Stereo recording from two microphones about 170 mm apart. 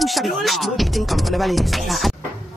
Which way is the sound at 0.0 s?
Centre (ahead or behind).